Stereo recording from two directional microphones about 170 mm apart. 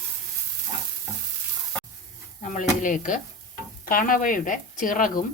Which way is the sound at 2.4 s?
45° left (ahead or behind).